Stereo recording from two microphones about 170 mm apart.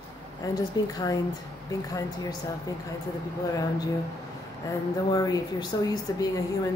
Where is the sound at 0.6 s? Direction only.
20° left (ahead or behind).